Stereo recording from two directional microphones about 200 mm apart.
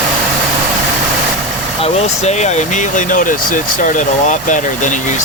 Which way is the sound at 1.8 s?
30° left (ahead or behind).